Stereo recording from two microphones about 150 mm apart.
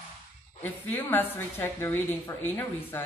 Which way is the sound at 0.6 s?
15° left (ahead or behind).